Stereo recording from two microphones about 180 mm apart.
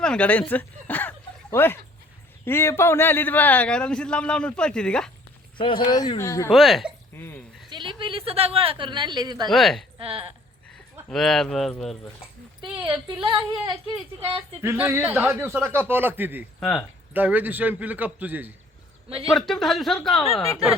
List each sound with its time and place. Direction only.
0.0 s a man's voice: 5° left (ahead or behind)
5.5 s speech: 25° left (ahead or behind)
6.5 s speech: centre (ahead or behind)
7.2 s a man's voice: 10° left (ahead or behind)
7.7 s speech: 25° right (ahead or behind)
9.5 s speech: centre (ahead or behind)
10.0 s speech: 30° right (ahead or behind)
11.1 s speech: centre (ahead or behind)
12.8 s a man's voice: 25° right (ahead or behind); by 16.5 s 10° right (ahead or behind)
16.6 s speech: 5° left (ahead or behind)
17.2 s a man's voice: 10° right (ahead or behind)
19.3 s speech: centre (ahead or behind)
20.3 s a man's voice: 15° left (ahead or behind)